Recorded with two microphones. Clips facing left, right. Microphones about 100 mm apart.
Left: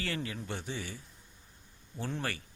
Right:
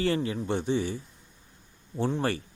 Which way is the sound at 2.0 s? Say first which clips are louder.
Right 9 dB; 20° right (ahead or behind).